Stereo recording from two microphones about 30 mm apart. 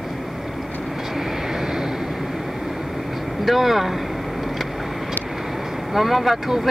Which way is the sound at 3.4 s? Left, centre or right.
Centre.